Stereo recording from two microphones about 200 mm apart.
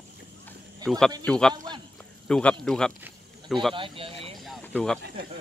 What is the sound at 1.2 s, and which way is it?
Speech, 5° left (ahead or behind).